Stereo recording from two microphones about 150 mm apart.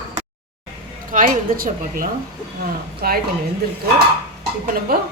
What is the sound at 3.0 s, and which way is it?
Speech, 85° right.